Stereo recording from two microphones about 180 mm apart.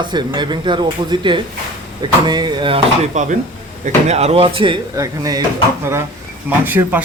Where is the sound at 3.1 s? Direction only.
40° right (ahead or behind).